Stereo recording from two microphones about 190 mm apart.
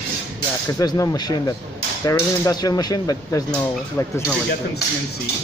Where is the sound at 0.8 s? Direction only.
20° left (ahead or behind).